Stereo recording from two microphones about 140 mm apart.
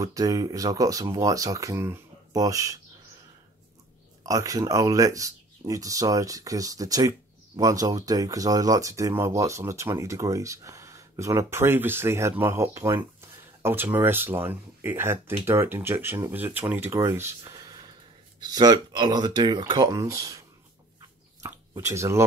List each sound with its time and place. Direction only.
0.0 s speech: 25° right (ahead or behind)
4.2 s speech: 25° right (ahead or behind)